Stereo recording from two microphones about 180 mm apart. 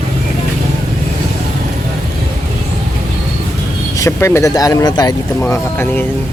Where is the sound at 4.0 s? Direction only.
15° left (ahead or behind).